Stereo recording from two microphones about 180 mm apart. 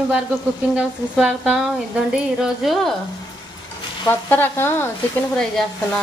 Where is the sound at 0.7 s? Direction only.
5° right (ahead or behind).